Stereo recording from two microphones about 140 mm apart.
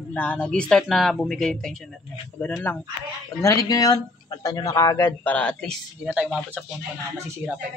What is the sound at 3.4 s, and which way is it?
A man's voice, 25° left (ahead or behind).